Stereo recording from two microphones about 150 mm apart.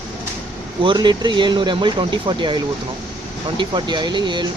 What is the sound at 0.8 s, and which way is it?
Speech, 30° right (ahead or behind).